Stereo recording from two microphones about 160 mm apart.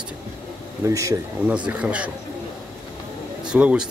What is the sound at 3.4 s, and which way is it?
Speech, 5° right (ahead or behind).